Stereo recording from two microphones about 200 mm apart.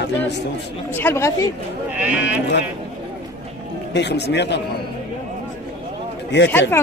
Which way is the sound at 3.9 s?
60° left (ahead or behind).